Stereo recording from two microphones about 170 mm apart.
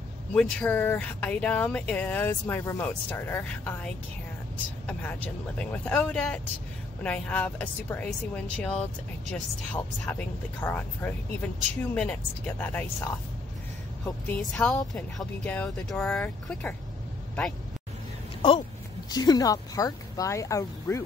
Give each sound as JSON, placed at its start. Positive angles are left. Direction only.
{"t": 0.3, "sound": "speech", "side_deg": 10}
{"t": 14.0, "sound": "speech", "side_deg": 10}
{"t": 19.0, "sound": "speech", "side_deg": 25}